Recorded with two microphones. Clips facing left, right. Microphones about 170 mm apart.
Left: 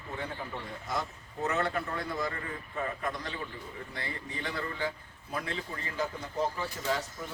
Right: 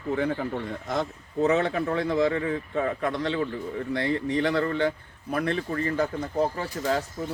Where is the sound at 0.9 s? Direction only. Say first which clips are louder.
Right 5 dB; 90° right.